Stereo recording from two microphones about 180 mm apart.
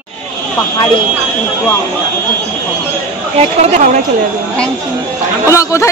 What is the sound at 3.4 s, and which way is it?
Speech, 35° right (ahead or behind).